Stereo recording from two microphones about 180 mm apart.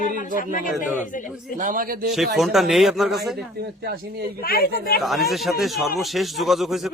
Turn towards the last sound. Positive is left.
turn(degrees=0)  # may be behind; listen again after turning